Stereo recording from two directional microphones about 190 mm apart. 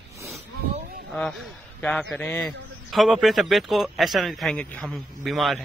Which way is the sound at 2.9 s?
Centre (ahead or behind).